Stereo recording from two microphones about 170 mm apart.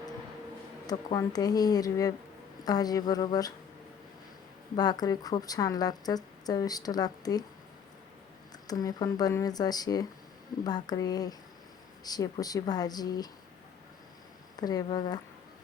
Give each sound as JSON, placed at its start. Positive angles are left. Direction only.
{"t": 0.9, "sound": "a woman's voice", "side_deg": 20}
{"t": 4.8, "sound": "a woman's voice", "side_deg": 25}
{"t": 8.6, "sound": "a woman's voice", "side_deg": 20}
{"t": 14.5, "sound": "a woman's voice", "side_deg": 25}